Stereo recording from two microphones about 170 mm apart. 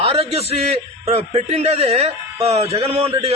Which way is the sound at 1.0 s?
40° right (ahead or behind).